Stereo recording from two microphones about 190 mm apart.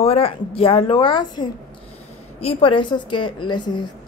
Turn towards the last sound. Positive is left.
turn(degrees=25)  # may be behind; listen again after turning